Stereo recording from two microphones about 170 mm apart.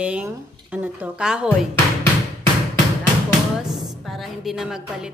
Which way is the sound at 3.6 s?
Centre (ahead or behind).